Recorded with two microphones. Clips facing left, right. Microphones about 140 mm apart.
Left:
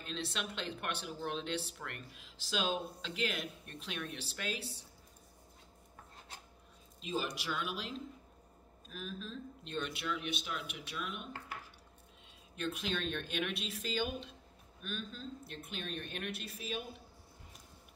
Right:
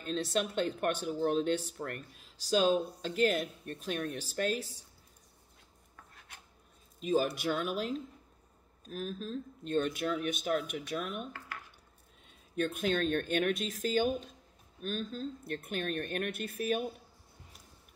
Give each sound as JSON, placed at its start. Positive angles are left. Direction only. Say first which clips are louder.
{"t": 0.0, "sound": "speech", "louder": "right 8 dB", "side_deg": -45}
{"t": 6.1, "sound": "filing", "louder": "left 4 dB", "side_deg": 30}
{"t": 7.1, "sound": "speech", "louder": "right 8 dB", "side_deg": -50}
{"t": 12.5, "sound": "speech", "louder": "right 7 dB", "side_deg": -50}